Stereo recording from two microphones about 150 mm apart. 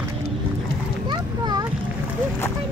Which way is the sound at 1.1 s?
30° right (ahead or behind).